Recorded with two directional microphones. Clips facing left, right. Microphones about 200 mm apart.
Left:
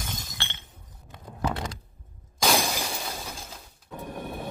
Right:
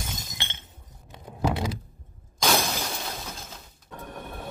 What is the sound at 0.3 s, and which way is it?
Glass, 20° right (ahead or behind).